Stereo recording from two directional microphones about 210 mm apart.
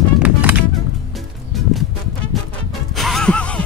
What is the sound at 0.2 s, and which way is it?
Music, 5° right (ahead or behind).